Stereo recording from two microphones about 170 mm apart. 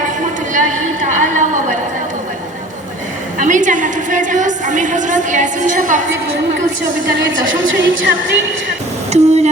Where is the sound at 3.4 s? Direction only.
50° right (ahead or behind).